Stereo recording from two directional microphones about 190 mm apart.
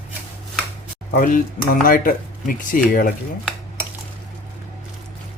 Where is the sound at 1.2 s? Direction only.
45° left (ahead or behind).